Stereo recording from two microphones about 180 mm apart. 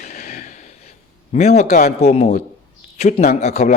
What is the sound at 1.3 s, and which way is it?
A man's voice, 35° left (ahead or behind).